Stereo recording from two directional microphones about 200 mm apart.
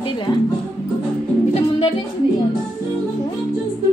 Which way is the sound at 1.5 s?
25° left (ahead or behind).